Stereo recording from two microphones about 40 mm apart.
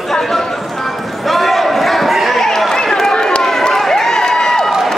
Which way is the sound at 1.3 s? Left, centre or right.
Centre.